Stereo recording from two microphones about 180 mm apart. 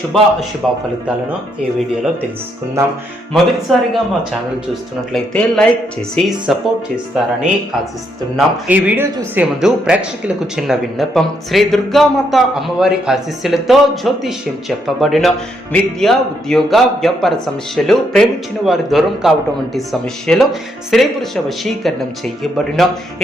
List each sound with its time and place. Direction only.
0.1 s speech: 5° left (ahead or behind)
3.3 s speech: centre (ahead or behind)
5.1 s speech: 5° left (ahead or behind)
8.4 s speech: 10° right (ahead or behind)